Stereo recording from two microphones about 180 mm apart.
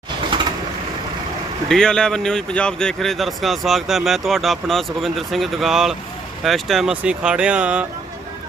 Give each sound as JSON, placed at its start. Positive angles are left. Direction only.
{"t": 0.3, "sound": "vehicle", "side_deg": -30}
{"t": 1.6, "sound": "speech", "side_deg": 5}